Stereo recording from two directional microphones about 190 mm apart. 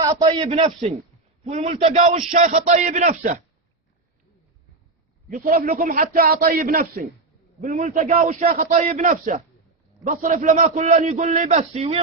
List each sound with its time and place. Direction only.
0.0 s a man's voice: 20° right (ahead or behind)
0.4 s a man's voice: 35° right (ahead or behind)
5.3 s a man's voice: 45° right (ahead or behind)